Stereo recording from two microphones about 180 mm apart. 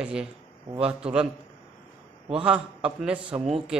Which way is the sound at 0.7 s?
35° right (ahead or behind).